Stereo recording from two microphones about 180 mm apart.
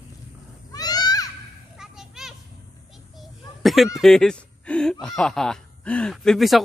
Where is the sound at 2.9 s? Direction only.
Centre (ahead or behind).